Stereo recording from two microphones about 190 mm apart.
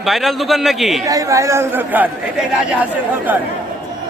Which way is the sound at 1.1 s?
15° right (ahead or behind).